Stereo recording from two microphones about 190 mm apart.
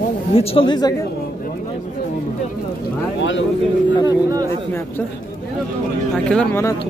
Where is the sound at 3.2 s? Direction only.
75° left (ahead or behind).